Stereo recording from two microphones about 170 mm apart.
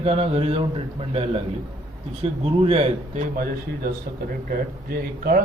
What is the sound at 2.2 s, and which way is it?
A man's voice, 35° right (ahead or behind).